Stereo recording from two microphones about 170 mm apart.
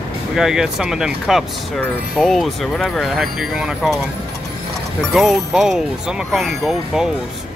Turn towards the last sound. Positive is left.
turn(degrees=0)  # may be behind; listen again after turning